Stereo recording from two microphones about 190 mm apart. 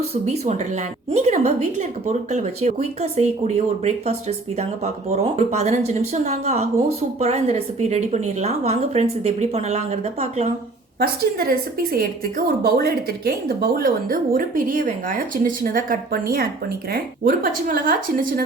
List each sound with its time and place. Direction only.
0.1 s a woman's voice: 35° right (ahead or behind)
11.0 s a woman's voice: 50° right (ahead or behind)